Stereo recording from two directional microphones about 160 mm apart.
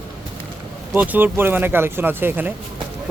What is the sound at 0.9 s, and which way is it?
Speech, 10° right (ahead or behind).